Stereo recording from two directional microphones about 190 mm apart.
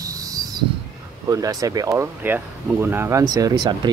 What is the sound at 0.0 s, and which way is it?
Owl, 20° right (ahead or behind).